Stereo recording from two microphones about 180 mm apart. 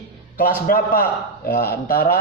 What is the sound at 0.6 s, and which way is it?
Speech, 55° left (ahead or behind).